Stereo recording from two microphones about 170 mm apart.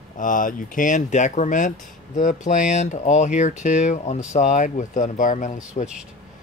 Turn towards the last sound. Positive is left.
turn(degrees=50)  # may be behind; listen again after turning